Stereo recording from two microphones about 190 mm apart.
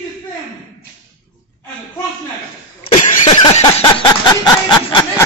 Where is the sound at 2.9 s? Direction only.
25° left (ahead or behind).